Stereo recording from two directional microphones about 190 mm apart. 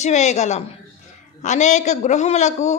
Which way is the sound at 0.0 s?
40° left (ahead or behind).